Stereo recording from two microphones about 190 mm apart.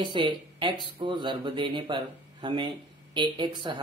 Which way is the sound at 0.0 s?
25° right (ahead or behind).